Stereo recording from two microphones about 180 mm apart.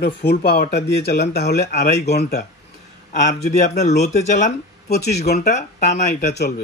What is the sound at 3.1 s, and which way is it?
Speech, 40° left (ahead or behind).